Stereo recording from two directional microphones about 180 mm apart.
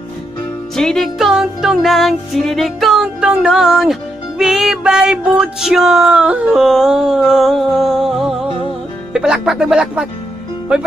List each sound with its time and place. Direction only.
0.7 s music: 5° left (ahead or behind)
10.7 s speech: 5° right (ahead or behind)